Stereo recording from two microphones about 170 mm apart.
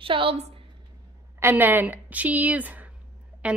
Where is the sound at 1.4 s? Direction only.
15° right (ahead or behind).